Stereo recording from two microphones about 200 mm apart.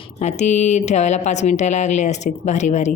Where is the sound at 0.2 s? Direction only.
35° left (ahead or behind).